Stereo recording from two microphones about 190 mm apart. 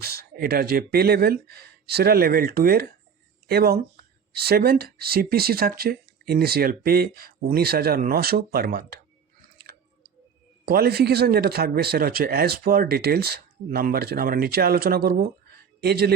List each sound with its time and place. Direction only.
0.0 s a man's voice: 55° right (ahead or behind)
10.7 s a man's voice: 55° right (ahead or behind)